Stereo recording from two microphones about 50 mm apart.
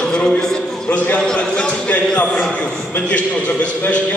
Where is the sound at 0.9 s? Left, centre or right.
Left.